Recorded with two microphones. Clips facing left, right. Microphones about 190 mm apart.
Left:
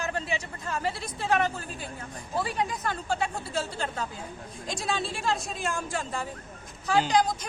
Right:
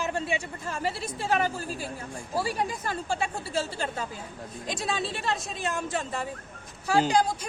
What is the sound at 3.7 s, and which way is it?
Speech, 5° right (ahead or behind).